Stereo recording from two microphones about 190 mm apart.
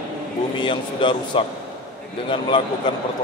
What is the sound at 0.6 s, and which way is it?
Speech, 25° left (ahead or behind).